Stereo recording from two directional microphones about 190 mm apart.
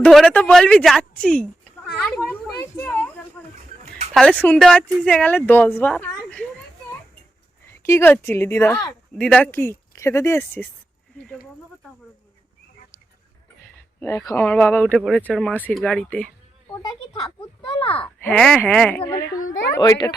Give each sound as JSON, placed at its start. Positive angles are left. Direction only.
{"t": 0.0, "sound": "a woman's voice", "side_deg": 0}
{"t": 2.1, "sound": "a sound", "side_deg": 10}
{"t": 4.1, "sound": "a woman's voice", "side_deg": 0}
{"t": 7.7, "sound": "speech", "side_deg": 15}
{"t": 14.0, "sound": "a woman's voice", "side_deg": 15}
{"t": 16.8, "sound": "a sound", "side_deg": 25}
{"t": 17.8, "sound": "speech", "side_deg": 5}
{"t": 19.8, "sound": "a child's voice", "side_deg": 20}